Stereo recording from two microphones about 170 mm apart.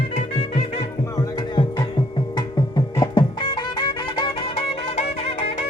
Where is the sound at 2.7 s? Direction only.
25° left (ahead or behind).